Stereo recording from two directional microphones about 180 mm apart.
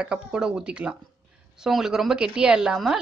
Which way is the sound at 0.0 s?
5° right (ahead or behind).